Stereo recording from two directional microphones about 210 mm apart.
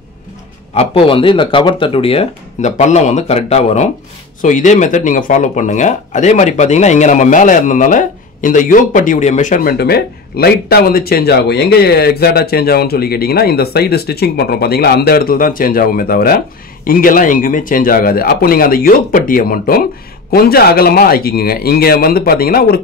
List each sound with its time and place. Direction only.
0.7 s speech: 25° left (ahead or behind); by 22.8 s 45° left (ahead or behind)